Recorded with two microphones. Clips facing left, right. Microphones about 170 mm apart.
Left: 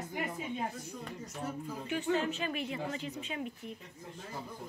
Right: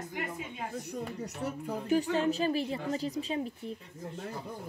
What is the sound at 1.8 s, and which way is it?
A woman's voice, 40° right (ahead or behind).